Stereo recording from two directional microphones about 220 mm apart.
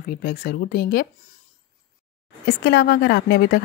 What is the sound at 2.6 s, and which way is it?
Speech, 45° left (ahead or behind).